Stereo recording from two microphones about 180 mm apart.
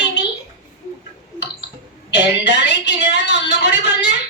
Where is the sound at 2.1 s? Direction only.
75° left (ahead or behind).